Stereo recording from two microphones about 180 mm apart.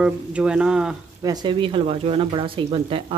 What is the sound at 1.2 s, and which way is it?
Speech, 20° right (ahead or behind).